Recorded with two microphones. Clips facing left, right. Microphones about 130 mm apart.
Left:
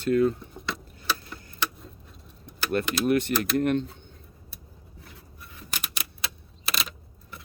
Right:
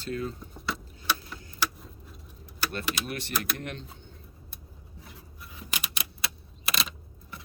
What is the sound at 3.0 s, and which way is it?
Speech, 50° left (ahead or behind).